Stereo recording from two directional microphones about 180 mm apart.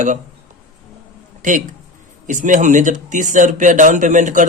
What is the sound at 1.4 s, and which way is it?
Speech, 45° right (ahead or behind).